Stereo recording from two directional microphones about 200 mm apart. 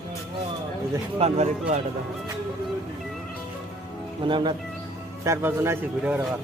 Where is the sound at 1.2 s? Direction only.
35° right (ahead or behind).